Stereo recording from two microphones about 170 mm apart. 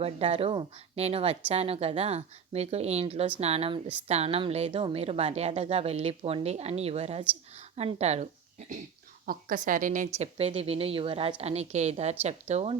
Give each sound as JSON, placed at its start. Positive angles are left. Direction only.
{"t": 0.0, "sound": "a woman's voice", "side_deg": -35}
{"t": 9.2, "sound": "a woman's voice", "side_deg": -60}
{"t": 10.2, "sound": "a woman's voice", "side_deg": -35}